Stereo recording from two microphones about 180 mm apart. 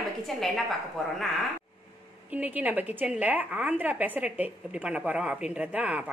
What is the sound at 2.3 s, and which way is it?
A woman's voice, 10° right (ahead or behind).